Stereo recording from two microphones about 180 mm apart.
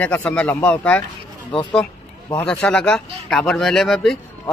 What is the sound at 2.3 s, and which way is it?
Speech, 5° left (ahead or behind).